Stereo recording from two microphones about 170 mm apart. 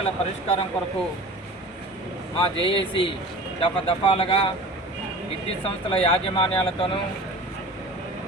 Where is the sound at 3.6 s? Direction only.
30° left (ahead or behind).